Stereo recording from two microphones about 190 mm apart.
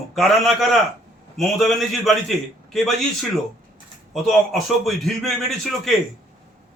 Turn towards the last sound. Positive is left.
turn(degrees=0)  # may be behind; listen again after turning